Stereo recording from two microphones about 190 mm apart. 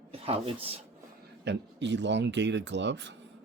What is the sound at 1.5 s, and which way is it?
Speech, 65° right (ahead or behind).